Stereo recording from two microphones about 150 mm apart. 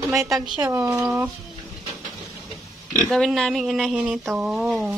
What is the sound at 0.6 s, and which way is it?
Speech, 20° right (ahead or behind).